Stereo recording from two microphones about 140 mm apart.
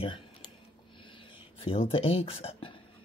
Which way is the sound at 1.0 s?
35° left (ahead or behind).